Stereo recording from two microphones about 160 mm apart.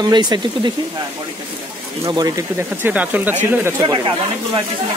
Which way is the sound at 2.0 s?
25° right (ahead or behind).